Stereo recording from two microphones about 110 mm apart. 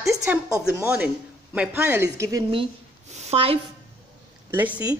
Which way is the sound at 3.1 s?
80° right.